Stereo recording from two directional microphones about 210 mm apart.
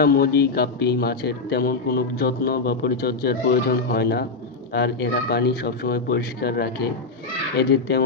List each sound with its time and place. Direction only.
0.0 s a man's voice: 45° left (ahead or behind)